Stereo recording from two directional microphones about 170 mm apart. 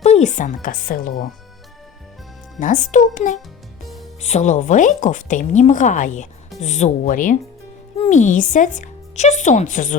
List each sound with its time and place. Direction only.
0.0 s speech: 40° left (ahead or behind)
2.6 s speech: 50° left (ahead or behind)
3.8 s music: centre (ahead or behind)
4.2 s speech: 40° left (ahead or behind)